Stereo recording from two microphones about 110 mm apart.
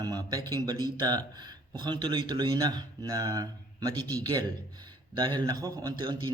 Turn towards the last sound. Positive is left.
turn(degrees=-35)  # may be behind; listen again after turning